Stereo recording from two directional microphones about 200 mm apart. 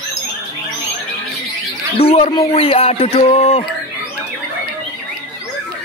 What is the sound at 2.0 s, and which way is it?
Speech, 30° left (ahead or behind).